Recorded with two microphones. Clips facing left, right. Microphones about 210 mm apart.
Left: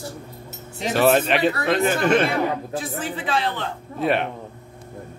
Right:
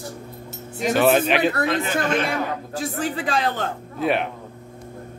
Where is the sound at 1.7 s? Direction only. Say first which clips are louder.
Left 3 dB; 55° left (ahead or behind).